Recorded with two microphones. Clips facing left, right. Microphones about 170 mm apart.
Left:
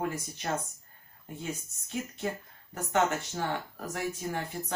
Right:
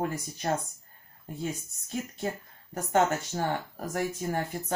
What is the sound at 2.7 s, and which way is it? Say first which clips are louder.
Speech: right 3 dB; 45° right (ahead or behind).